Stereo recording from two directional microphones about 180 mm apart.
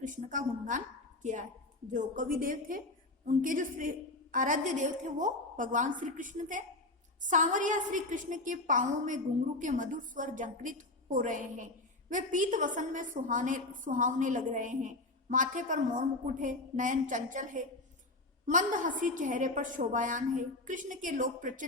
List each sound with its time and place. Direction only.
0.0 s a woman's voice: 45° right (ahead or behind)